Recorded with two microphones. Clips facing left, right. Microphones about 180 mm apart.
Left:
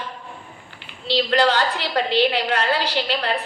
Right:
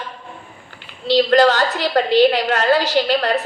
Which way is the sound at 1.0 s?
45° right (ahead or behind).